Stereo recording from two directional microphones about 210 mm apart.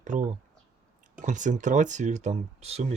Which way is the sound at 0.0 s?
35° right (ahead or behind).